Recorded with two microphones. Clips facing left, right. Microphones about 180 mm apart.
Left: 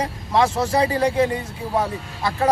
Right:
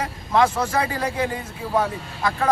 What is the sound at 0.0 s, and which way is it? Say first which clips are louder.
A man's voice: even; 30° left (ahead or behind).